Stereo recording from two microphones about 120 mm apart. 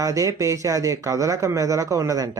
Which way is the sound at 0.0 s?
25° right (ahead or behind).